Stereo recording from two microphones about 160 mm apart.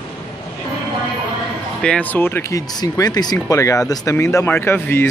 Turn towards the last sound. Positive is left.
turn(degrees=15)  # may be behind; listen again after turning